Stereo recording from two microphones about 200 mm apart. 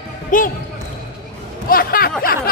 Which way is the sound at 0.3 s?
40° left (ahead or behind).